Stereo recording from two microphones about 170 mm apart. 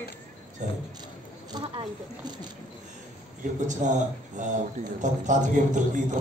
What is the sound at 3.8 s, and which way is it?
A man's voice, 45° right (ahead or behind).